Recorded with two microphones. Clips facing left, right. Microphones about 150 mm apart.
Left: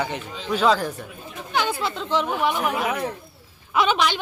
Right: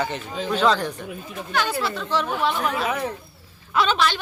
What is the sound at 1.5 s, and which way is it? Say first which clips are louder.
Speech: even; 20° left (ahead or behind).